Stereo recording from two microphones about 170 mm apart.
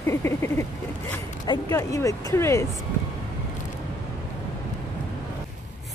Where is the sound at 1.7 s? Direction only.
20° left (ahead or behind).